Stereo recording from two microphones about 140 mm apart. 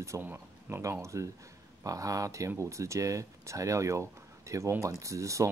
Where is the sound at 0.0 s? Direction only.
15° right (ahead or behind).